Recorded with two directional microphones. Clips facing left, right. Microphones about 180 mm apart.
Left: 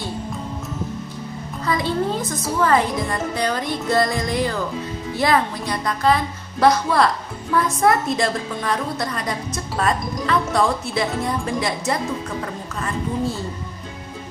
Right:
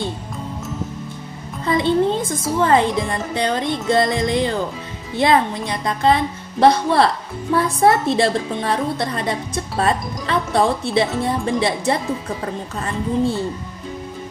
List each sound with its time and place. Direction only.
1.7 s a woman's voice: 25° right (ahead or behind)